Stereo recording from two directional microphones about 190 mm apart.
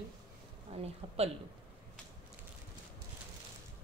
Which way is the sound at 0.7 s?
30° right (ahead or behind).